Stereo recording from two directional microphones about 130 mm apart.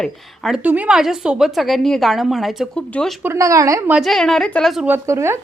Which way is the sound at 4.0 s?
Centre (ahead or behind).